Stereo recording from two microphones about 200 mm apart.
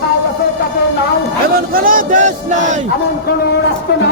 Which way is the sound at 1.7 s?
45° right (ahead or behind).